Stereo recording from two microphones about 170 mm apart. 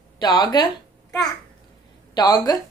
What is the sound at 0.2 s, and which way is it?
Speech, 25° left (ahead or behind).